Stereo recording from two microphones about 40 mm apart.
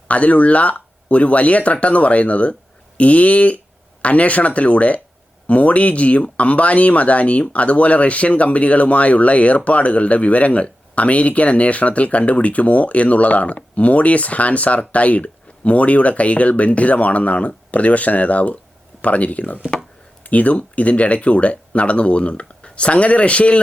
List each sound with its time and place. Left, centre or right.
0.1 s speech: left